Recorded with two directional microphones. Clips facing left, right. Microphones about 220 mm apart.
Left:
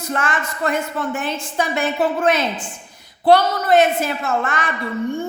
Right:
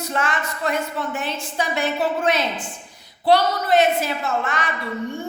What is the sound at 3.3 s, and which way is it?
Speech, 50° left (ahead or behind).